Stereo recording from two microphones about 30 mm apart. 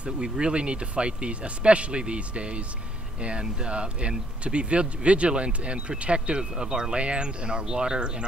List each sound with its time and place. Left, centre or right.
0.0 s speech: right
6.5 s speech: right